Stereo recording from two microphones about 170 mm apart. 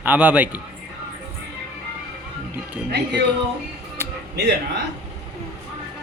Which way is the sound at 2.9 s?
80° right.